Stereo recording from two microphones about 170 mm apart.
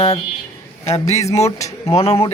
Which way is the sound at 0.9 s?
40° left (ahead or behind).